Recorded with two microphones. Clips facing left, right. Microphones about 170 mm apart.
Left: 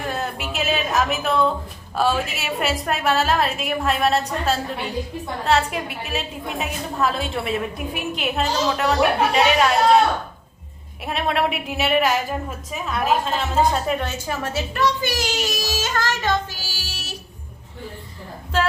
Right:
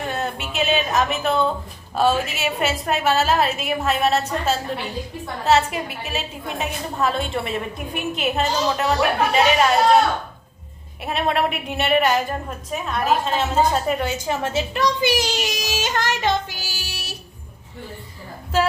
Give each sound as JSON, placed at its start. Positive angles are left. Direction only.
{"t": 0.1, "sound": "a woman's voice", "side_deg": 0}
{"t": 11.0, "sound": "a woman's voice", "side_deg": 0}
{"t": 14.3, "sound": "a woman's voice", "side_deg": -20}
{"t": 15.1, "sound": "music", "side_deg": -15}
{"t": 18.5, "sound": "a woman's voice", "side_deg": -5}